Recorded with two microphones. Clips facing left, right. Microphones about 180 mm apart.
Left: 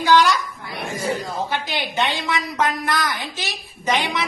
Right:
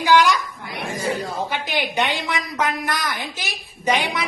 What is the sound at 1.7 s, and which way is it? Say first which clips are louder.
A woman's voice: right 4 dB; 15° right (ahead or behind).